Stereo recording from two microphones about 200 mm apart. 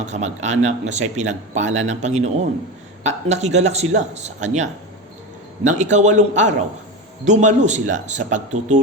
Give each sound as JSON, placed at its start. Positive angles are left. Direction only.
{"t": 0.0, "sound": "speech", "side_deg": -35}